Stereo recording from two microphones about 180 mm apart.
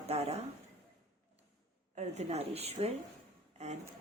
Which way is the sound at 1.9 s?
35° right (ahead or behind).